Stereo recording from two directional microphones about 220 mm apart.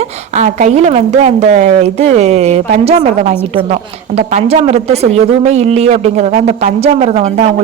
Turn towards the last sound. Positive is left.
turn(degrees=-30)  # may be behind; listen again after turning